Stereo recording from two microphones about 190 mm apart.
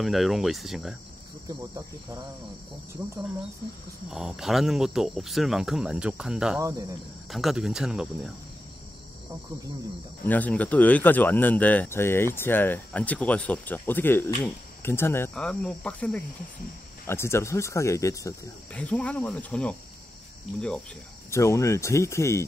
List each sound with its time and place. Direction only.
0.0 s speech: centre (ahead or behind)
1.5 s cricket: 20° right (ahead or behind)
4.1 s speech: centre (ahead or behind)
10.2 s speech: 10° left (ahead or behind)
21.3 s speech: 15° left (ahead or behind)